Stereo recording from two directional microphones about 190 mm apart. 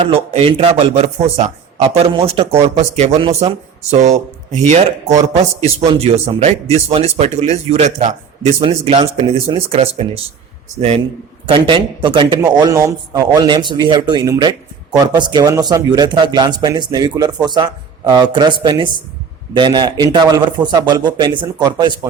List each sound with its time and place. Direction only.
0.1 s a man's voice: 30° right (ahead or behind)